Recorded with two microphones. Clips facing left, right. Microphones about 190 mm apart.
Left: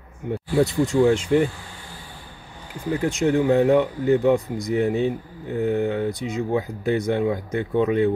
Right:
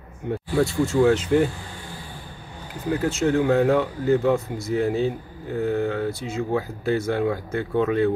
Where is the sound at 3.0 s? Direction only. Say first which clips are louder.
Left 1 dB; 15° left (ahead or behind).